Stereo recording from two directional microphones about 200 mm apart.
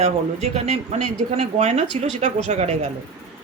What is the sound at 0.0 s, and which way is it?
Speech, 30° right (ahead or behind).